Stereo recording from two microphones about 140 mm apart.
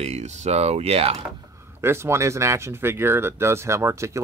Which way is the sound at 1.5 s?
15° right (ahead or behind).